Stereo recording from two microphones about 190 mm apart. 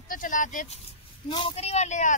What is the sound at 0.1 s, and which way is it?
Speech, 45° left (ahead or behind).